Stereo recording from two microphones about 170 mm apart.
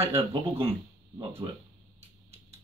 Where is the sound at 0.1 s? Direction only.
30° right (ahead or behind).